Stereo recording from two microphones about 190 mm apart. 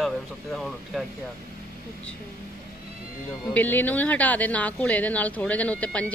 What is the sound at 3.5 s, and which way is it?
A woman's voice, 10° left (ahead or behind).